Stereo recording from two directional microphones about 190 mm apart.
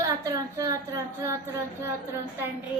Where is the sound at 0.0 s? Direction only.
20° right (ahead or behind).